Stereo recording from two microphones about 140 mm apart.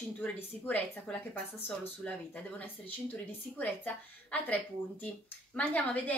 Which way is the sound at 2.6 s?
15° left (ahead or behind).